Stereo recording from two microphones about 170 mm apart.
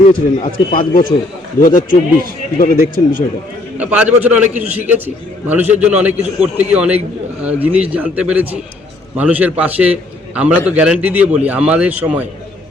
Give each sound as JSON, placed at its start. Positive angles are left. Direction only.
{"t": 0.1, "sound": "a man's voice", "side_deg": 55}
{"t": 3.8, "sound": "a man's voice", "side_deg": -10}